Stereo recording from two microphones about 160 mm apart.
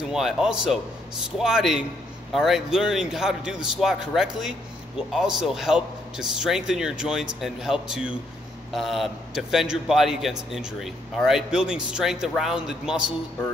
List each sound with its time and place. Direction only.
0.1 s a man's voice: 5° right (ahead or behind)